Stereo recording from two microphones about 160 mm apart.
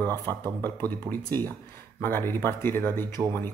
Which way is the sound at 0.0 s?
25° right (ahead or behind).